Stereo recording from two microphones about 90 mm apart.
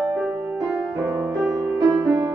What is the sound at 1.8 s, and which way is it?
Music, 35° right (ahead or behind).